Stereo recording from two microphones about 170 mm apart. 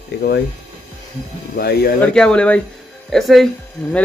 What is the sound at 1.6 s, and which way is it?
Speech, 70° left (ahead or behind).